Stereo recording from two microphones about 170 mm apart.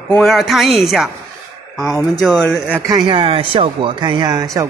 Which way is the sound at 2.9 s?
30° right (ahead or behind).